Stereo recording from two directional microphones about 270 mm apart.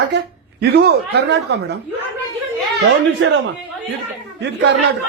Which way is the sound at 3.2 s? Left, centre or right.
Right.